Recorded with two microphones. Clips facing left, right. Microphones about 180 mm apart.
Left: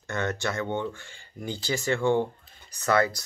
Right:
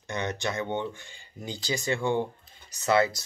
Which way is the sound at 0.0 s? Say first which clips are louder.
Left 2 dB; 20° right (ahead or behind).